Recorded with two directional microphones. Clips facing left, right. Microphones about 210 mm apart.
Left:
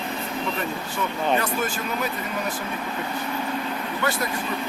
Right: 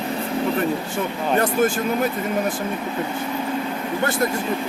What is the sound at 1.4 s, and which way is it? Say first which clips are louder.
Speech: right 7 dB; 50° right (ahead or behind).